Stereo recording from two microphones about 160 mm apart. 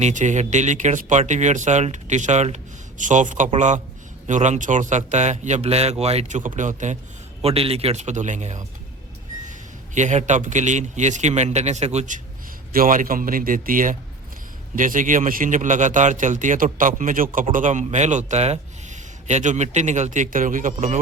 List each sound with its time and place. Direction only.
0.0 s a man's voice: 50° right (ahead or behind)
7.4 s a man's voice: 40° right (ahead or behind)
12.7 s a man's voice: 60° right (ahead or behind)